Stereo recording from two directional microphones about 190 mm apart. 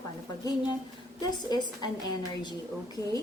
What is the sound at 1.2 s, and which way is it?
Speech, 20° left (ahead or behind).